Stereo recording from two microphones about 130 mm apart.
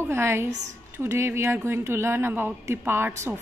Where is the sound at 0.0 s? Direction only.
20° right (ahead or behind).